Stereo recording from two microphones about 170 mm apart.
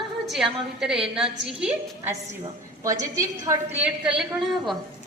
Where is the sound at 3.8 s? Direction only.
10° right (ahead or behind).